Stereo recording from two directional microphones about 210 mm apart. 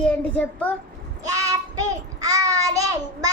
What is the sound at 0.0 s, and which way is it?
Speech, 5° left (ahead or behind).